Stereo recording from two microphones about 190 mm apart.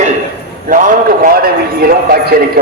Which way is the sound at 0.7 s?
45° right (ahead or behind).